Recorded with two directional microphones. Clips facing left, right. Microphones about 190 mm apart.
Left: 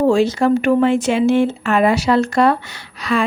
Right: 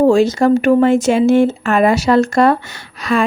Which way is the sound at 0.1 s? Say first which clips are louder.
Right 3 dB; 45° right (ahead or behind).